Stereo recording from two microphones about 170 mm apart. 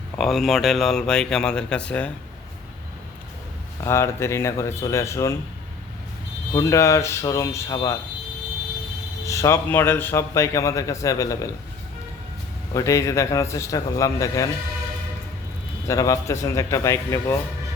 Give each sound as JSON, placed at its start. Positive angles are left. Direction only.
{"t": 0.2, "sound": "speech", "side_deg": 0}
{"t": 3.8, "sound": "a man's voice", "side_deg": 15}
{"t": 6.5, "sound": "a man's voice", "side_deg": 15}
{"t": 9.2, "sound": "a man's voice", "side_deg": 15}
{"t": 12.7, "sound": "a man's voice", "side_deg": 20}
{"t": 15.9, "sound": "a man's voice", "side_deg": 20}